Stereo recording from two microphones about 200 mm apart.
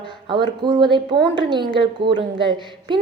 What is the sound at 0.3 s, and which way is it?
A woman's voice, 25° right (ahead or behind).